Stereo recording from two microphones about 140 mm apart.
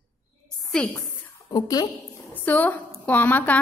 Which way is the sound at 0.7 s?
5° left (ahead or behind).